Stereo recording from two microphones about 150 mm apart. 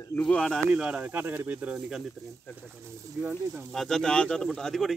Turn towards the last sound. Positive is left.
turn(degrees=5)  # may be behind; listen again after turning